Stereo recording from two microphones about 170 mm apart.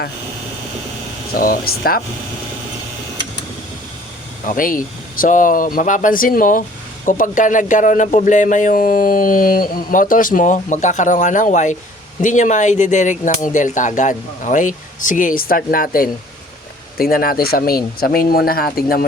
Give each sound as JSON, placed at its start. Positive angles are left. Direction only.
{"t": 1.3, "sound": "a man's voice", "side_deg": 60}
{"t": 4.4, "sound": "a man's voice", "side_deg": 55}